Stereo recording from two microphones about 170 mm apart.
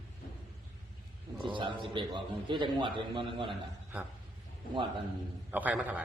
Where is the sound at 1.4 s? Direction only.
30° right (ahead or behind).